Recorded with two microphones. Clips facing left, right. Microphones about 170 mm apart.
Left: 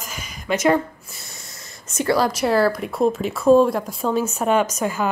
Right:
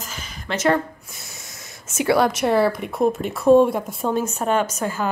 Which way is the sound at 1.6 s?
5° right (ahead or behind).